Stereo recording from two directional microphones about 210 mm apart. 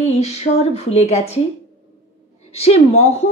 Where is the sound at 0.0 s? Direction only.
30° left (ahead or behind).